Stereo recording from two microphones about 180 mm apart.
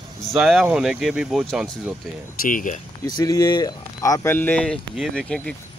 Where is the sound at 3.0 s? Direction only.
20° left (ahead or behind); by 5.5 s 5° left (ahead or behind).